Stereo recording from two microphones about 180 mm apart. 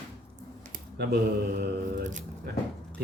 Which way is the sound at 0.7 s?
65° right (ahead or behind).